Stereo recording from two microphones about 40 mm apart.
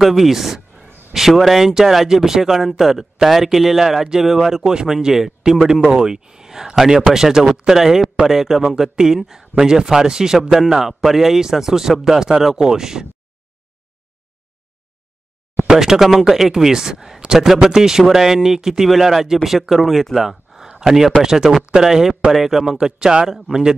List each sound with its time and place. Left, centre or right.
0.0 s speech: centre
0.7 s a sound: centre
1.4 s speech: centre
10.5 s speech: centre
15.7 s speech: centre
17.2 s a sound: centre
17.5 s speech: centre